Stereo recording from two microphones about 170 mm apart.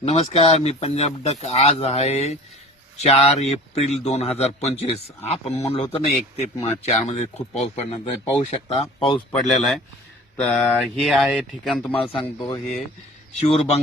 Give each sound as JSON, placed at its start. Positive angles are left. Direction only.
{"t": 0.0, "sound": "a man's voice", "side_deg": 35}
{"t": 9.3, "sound": "speech", "side_deg": 0}
{"t": 11.9, "sound": "a man's voice", "side_deg": 10}
{"t": 13.4, "sound": "a man's voice", "side_deg": 35}